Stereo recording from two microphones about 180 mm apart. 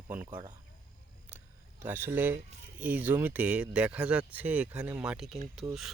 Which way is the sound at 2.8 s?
10° right (ahead or behind).